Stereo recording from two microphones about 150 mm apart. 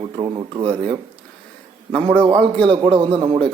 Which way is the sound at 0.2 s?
35° right (ahead or behind).